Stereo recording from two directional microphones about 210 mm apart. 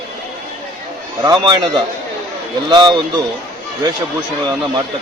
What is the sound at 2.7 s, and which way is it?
Speech, 20° right (ahead or behind).